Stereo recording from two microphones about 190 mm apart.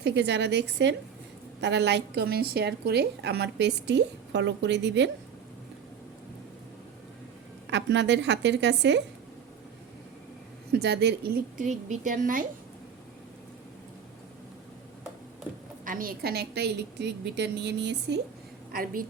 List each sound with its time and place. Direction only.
0.0 s a woman's voice: 65° right (ahead or behind)
7.7 s a woman's voice: 65° right (ahead or behind)
10.7 s a woman's voice: 60° right (ahead or behind)
11.5 s a woman's voice: 40° right (ahead or behind)
15.8 s a woman's voice: 45° right (ahead or behind); by 18.2 s 65° right (ahead or behind)
18.7 s a woman's voice: 50° right (ahead or behind)